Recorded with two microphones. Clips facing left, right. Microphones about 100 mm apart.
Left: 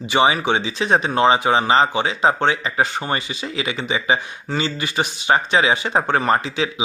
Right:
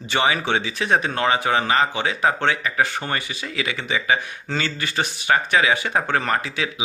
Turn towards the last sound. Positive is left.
turn(degrees=25)  # may be behind; listen again after turning